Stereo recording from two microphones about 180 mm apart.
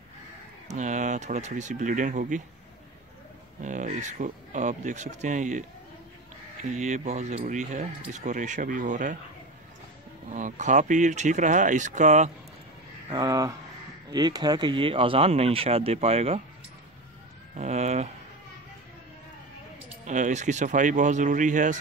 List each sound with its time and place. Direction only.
0.7 s speech: 40° right (ahead or behind)
3.6 s speech: 45° right (ahead or behind)
6.7 s speech: 40° right (ahead or behind)
10.3 s speech: 45° right (ahead or behind)
13.1 s speech: 20° right (ahead or behind); by 16.3 s 35° right (ahead or behind)
17.6 s speech: 40° right (ahead or behind)
20.1 s speech: 45° right (ahead or behind)